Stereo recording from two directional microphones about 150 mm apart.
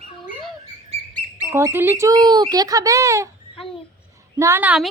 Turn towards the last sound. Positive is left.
turn(degrees=-10)  # may be behind; listen again after turning